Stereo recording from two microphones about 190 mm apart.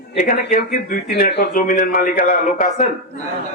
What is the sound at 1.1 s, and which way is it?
A man's voice, 60° left (ahead or behind).